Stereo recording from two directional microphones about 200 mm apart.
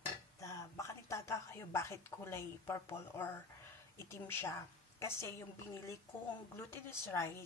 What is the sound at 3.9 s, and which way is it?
A woman's voice, 15° left (ahead or behind).